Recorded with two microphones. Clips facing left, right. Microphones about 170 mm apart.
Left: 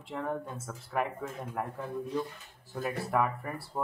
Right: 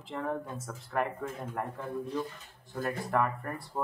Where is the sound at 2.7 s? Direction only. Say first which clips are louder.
Even; 5° left (ahead or behind).